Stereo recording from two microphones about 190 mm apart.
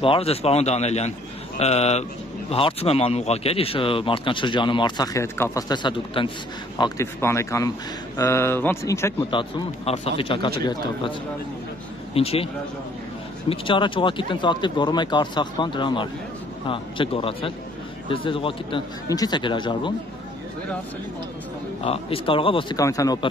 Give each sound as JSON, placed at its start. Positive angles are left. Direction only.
{"t": 0.0, "sound": "speech", "side_deg": 30}
{"t": 6.8, "sound": "speech", "side_deg": 15}
{"t": 9.3, "sound": "speech", "side_deg": 30}
{"t": 13.5, "sound": "speech", "side_deg": 25}
{"t": 21.8, "sound": "speech", "side_deg": 30}